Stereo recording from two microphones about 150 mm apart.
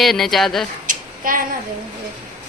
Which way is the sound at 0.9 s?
65° right (ahead or behind).